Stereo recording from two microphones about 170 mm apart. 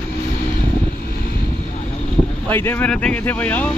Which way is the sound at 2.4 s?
10° left (ahead or behind).